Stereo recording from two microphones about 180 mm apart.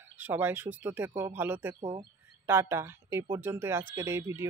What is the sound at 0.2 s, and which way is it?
Speech, 10° right (ahead or behind).